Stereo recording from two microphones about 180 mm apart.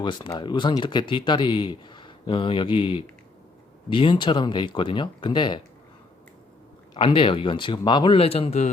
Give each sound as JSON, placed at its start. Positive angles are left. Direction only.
{"t": 0.0, "sound": "speech", "side_deg": 25}
{"t": 6.9, "sound": "speech", "side_deg": 30}